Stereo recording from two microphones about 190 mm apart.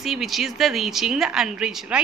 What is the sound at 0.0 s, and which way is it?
A woman's voice, centre (ahead or behind).